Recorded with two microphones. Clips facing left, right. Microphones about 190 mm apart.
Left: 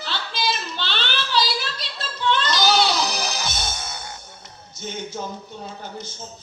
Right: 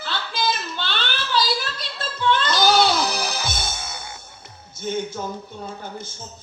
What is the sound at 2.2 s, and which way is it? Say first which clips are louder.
Music: right 2 dB; 50° right (ahead or behind).